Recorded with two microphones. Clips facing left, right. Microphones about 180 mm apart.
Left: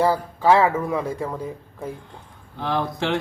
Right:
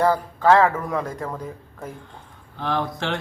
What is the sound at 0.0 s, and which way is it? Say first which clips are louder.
Speech: even; 10° left (ahead or behind).